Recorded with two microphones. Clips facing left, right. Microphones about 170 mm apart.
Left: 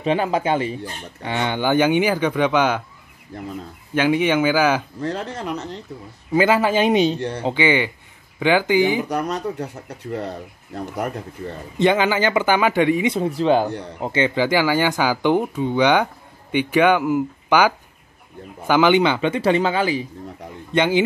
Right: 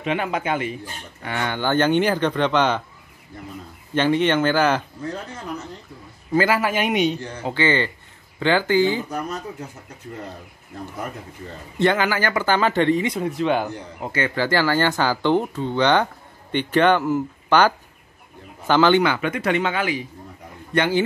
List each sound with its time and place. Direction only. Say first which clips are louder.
0.0 s speech: left 4 dB; 30° left (ahead or behind)
1.2 s speech: left 3 dB; 20° left (ahead or behind)
3.9 s speech: left 1 dB; 10° left (ahead or behind)
5.0 s speech: left 5 dB; 80° left
6.3 s speech: left 3 dB; 25° left (ahead or behind)
7.2 s speech: left 7 dB; 65° left (ahead or behind)
7.4 s speech: left 2 dB; 15° left (ahead or behind)
9.1 s speech: left 5 dB; 75° left (ahead or behind)
11.8 s speech: left 2 dB; 15° left (ahead or behind)
13.0 s speech: left 3 dB; 30° left (ahead or behind)
13.7 s speech: left 4 dB; 70° left (ahead or behind)
14.0 s speech: left 4 dB; 20° left (ahead or behind)
20.7 s speech: left 2 dB; 20° left (ahead or behind)